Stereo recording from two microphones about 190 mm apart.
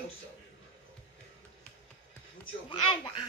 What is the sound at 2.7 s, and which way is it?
Speech, 25° left (ahead or behind).